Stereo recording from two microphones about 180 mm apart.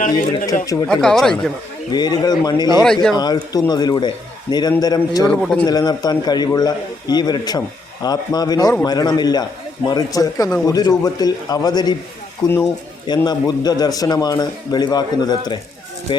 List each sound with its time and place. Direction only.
0.6 s a man's voice: 20° left (ahead or behind)
0.9 s speech: 5° left (ahead or behind)
1.9 s a man's voice: 25° left (ahead or behind)
2.8 s speech: 5° left (ahead or behind)
3.2 s a man's voice: 20° left (ahead or behind)
5.2 s speech: 5° left (ahead or behind)
5.6 s a man's voice: 20° left (ahead or behind)